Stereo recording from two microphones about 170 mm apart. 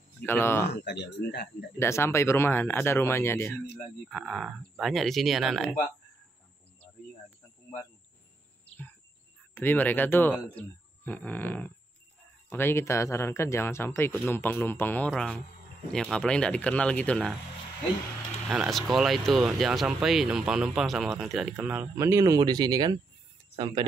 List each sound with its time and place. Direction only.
0.2 s speech: 15° left (ahead or behind)
0.7 s speech: 80° left
1.8 s speech: 15° left (ahead or behind)
3.7 s speech: centre (ahead or behind)
9.5 s speech: 10° left (ahead or behind)
18.5 s speech: centre (ahead or behind)
21.7 s speech: 15° right (ahead or behind)